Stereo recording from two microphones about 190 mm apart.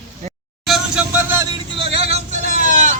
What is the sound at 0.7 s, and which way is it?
Vehicle, 5° right (ahead or behind).